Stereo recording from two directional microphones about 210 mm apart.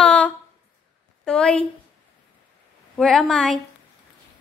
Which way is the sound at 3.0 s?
Centre (ahead or behind).